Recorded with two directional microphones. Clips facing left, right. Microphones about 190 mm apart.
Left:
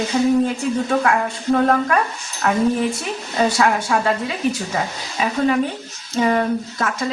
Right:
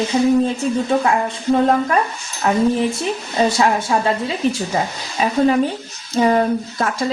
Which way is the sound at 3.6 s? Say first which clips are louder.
Right 1 dB; 25° right (ahead or behind).